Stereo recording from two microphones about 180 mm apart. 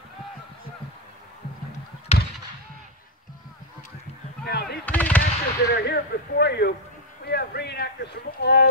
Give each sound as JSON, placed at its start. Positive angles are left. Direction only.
{"t": 2.1, "sound": "basketball bounce", "side_deg": 35}
{"t": 4.5, "sound": "artillery fire", "side_deg": 60}
{"t": 4.8, "sound": "artillery fire", "side_deg": 10}
{"t": 5.7, "sound": "speech", "side_deg": 65}